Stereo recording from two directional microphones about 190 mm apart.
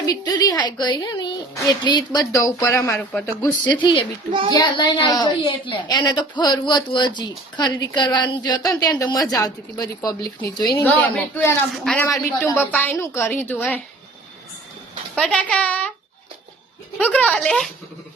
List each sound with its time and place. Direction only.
0.0 s a woman's voice: 20° left (ahead or behind)
3.7 s a woman's voice: 25° left (ahead or behind)
4.3 s a child's voice: 25° right (ahead or behind)
4.5 s a woman's voice: 25° left (ahead or behind)
10.8 s a woman's voice: 10° left (ahead or behind)
15.1 s a woman's voice: 5° left (ahead or behind)
17.0 s a woman's voice: 5° left (ahead or behind)